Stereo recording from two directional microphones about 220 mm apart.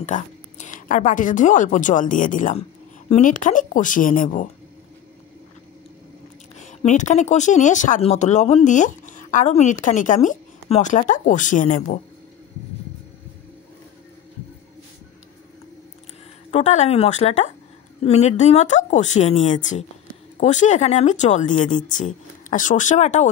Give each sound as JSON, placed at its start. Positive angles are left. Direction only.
{"t": 0.0, "sound": "a woman's voice", "side_deg": 35}
{"t": 6.6, "sound": "speech", "side_deg": 35}
{"t": 16.4, "sound": "speech", "side_deg": 30}